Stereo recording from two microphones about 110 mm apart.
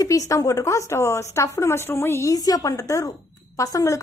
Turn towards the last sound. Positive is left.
turn(degrees=30)  # may be behind; listen again after turning